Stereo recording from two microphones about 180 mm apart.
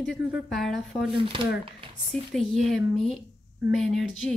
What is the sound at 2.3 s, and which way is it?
A woman's voice, centre (ahead or behind).